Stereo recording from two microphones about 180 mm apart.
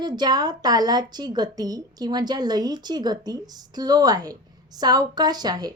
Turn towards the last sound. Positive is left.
turn(degrees=-20)  # may be behind; listen again after turning